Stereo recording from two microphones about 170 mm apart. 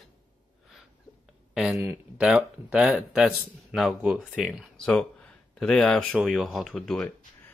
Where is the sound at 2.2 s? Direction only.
5° right (ahead or behind).